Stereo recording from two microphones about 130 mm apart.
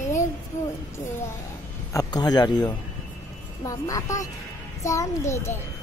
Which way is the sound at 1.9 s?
30° left (ahead or behind).